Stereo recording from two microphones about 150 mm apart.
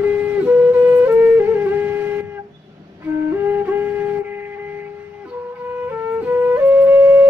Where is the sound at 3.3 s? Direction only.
15° right (ahead or behind).